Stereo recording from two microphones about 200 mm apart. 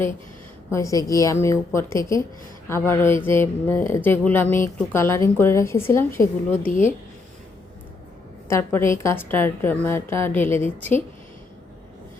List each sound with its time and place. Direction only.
0.7 s a woman's voice: 15° left (ahead or behind)
6.7 s speech: 40° left (ahead or behind)
8.4 s a woman's voice: 15° left (ahead or behind)